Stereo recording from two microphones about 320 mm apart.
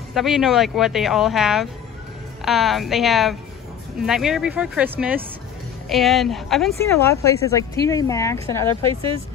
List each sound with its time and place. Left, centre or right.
0.1 s speech: centre